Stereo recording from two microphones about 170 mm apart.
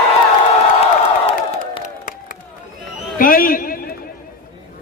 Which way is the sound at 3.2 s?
55° left (ahead or behind).